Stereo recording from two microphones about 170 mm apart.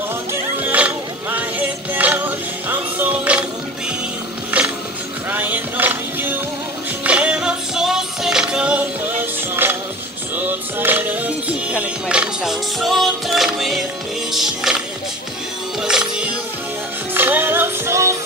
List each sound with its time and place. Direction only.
0.3 s music: 10° right (ahead or behind)
4.5 s mechanisms: 10° right (ahead or behind)
5.3 s music: 10° right (ahead or behind)
15.8 s music: 5° right (ahead or behind)